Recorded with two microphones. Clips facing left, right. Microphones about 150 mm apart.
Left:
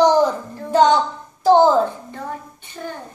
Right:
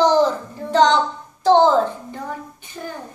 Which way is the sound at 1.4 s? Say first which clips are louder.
Left 1 dB; 10° left (ahead or behind).